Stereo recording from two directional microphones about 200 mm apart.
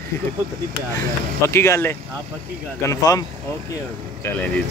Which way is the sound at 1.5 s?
15° left (ahead or behind).